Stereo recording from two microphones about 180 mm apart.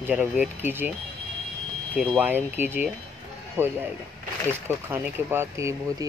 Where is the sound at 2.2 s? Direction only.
10° right (ahead or behind).